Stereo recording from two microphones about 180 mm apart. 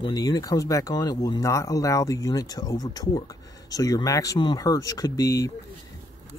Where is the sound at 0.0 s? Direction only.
20° left (ahead or behind).